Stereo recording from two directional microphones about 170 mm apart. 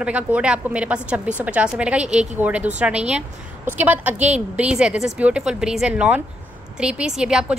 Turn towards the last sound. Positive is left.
turn(degrees=-5)  # may be behind; listen again after turning